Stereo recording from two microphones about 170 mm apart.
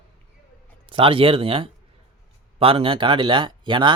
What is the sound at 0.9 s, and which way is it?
Speech, 30° right (ahead or behind).